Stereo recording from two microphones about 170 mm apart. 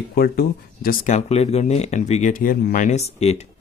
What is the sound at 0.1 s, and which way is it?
Speech, 65° left (ahead or behind).